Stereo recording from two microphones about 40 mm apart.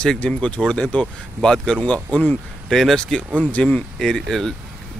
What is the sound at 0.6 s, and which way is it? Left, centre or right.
Speech, right.